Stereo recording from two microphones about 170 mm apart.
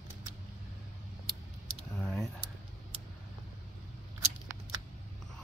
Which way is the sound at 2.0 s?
5° left (ahead or behind).